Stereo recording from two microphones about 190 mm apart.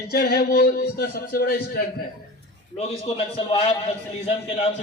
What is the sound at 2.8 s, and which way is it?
A man's voice, 30° left (ahead or behind).